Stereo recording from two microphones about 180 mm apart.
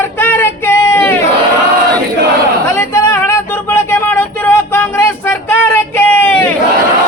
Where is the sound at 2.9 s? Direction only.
15° left (ahead or behind).